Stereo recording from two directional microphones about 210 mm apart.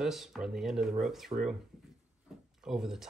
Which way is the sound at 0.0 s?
Centre (ahead or behind).